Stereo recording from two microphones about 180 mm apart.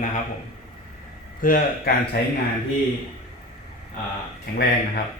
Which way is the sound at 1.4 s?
50° left (ahead or behind).